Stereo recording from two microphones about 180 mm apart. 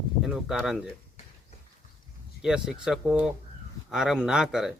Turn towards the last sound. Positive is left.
turn(degrees=0)  # may be behind; listen again after turning